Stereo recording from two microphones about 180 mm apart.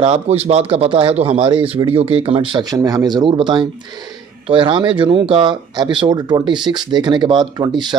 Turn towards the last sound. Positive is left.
turn(degrees=-25)  # may be behind; listen again after turning